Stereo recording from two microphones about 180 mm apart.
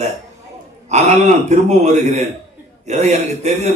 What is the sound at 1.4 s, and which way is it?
A man's voice, 40° right (ahead or behind).